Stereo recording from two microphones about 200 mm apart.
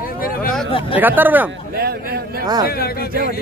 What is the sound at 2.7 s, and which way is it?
Speech, 50° left (ahead or behind).